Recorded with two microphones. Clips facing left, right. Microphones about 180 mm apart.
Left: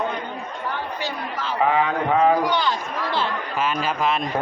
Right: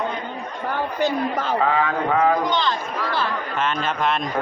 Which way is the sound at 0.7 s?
45° right (ahead or behind).